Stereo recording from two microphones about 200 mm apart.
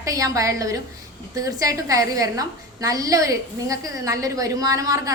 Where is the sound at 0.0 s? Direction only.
15° right (ahead or behind).